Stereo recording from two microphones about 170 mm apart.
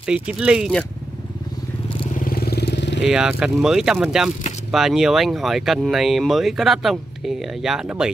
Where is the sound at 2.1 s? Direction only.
55° left (ahead or behind); by 3.0 s 90° left.